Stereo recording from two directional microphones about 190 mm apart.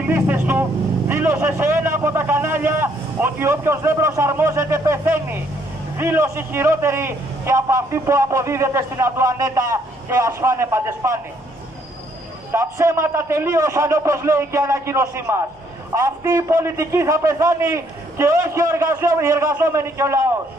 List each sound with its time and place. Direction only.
0.1 s a man's voice: 10° right (ahead or behind)
12.5 s a man's voice: 15° right (ahead or behind)